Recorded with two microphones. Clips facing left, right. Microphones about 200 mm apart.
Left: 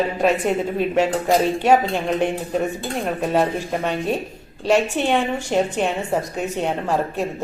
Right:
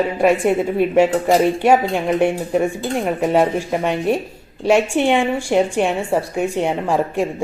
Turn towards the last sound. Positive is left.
turn(degrees=-10)  # may be behind; listen again after turning